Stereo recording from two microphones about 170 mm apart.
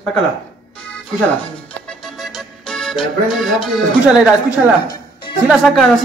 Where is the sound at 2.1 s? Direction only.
Centre (ahead or behind).